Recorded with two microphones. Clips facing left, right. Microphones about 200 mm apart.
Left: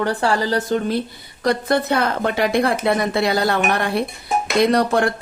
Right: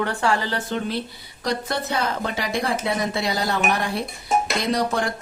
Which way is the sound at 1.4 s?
55° left (ahead or behind).